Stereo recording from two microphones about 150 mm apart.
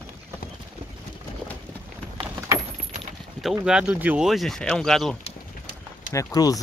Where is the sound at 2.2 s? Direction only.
15° right (ahead or behind).